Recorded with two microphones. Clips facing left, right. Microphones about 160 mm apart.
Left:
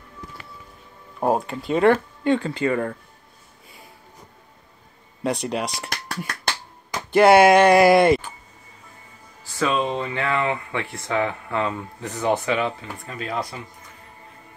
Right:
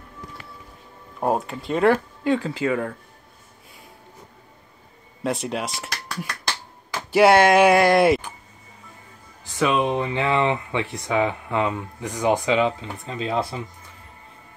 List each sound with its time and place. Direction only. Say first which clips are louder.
1.2 s speech: left 1 dB; centre (ahead or behind)
5.2 s speech: left 1 dB; centre (ahead or behind)
5.9 s beatboxing: left 1 dB; 55° left (ahead or behind)
6.9 s a sound: left 1 dB; 5° right (ahead or behind)
7.3 s speech: left 2 dB; centre (ahead or behind)
9.4 s speech: right 2 dB; 20° right (ahead or behind)